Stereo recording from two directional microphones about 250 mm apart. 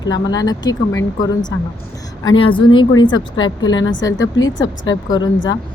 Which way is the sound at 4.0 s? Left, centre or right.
Centre.